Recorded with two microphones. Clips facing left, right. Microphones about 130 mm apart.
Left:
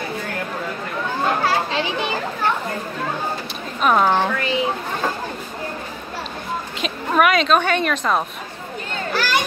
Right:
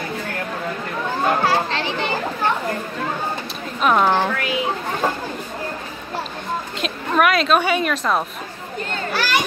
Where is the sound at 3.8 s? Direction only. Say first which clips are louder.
Even; centre (ahead or behind).